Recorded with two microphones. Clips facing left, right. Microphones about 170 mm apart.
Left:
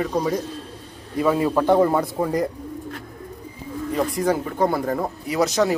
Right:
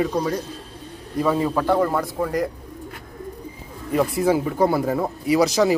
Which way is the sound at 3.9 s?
5° right (ahead or behind).